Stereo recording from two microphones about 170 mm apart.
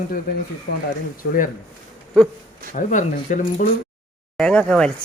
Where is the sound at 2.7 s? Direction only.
45° left (ahead or behind).